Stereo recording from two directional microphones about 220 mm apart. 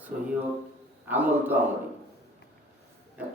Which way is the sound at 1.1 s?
10° right (ahead or behind).